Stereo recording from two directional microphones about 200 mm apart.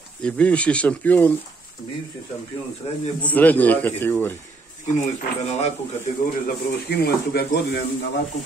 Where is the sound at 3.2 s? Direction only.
10° left (ahead or behind).